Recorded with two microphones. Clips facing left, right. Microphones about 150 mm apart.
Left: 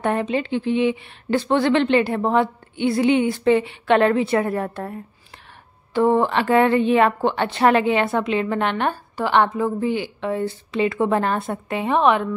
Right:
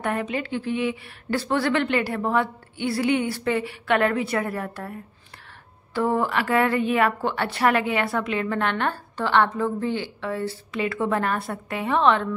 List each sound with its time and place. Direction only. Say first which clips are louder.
0.0 s a woman's voice: left 5 dB; 25° left (ahead or behind)